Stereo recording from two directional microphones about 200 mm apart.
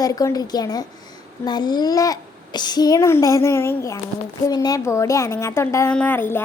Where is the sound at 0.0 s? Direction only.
15° left (ahead or behind).